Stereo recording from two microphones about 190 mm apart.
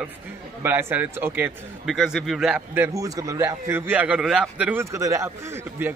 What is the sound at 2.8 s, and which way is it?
Speech, 15° right (ahead or behind).